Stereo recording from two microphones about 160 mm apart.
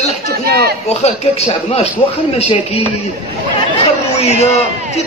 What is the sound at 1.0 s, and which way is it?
A man's voice, 40° left (ahead or behind).